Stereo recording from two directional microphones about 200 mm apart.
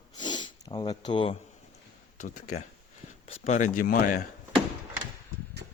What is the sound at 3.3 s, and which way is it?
Speech, 35° left (ahead or behind).